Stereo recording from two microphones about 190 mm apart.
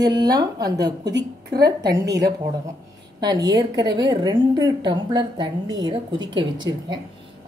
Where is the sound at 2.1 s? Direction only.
60° right (ahead or behind).